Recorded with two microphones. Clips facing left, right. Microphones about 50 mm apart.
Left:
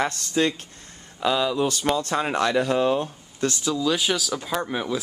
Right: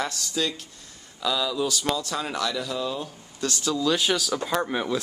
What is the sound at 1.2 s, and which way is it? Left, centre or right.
Speech, left.